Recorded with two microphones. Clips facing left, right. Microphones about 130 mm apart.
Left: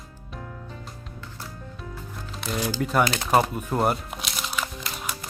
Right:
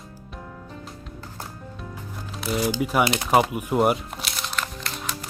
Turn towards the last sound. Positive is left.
turn(degrees=5)  # may be behind; listen again after turning